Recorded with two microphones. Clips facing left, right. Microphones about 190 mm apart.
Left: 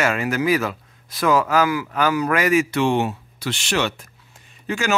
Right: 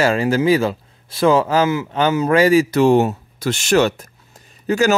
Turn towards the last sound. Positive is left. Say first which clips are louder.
# right 7 dB
turn(degrees=-40)  # may be behind; listen again after turning